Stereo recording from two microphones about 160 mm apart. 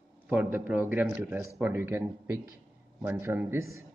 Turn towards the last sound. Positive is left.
turn(degrees=-15)  # may be behind; listen again after turning